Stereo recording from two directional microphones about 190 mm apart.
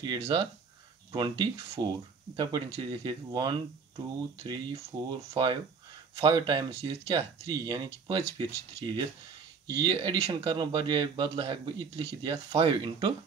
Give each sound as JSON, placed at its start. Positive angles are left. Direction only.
{"t": 0.0, "sound": "speech", "side_deg": -25}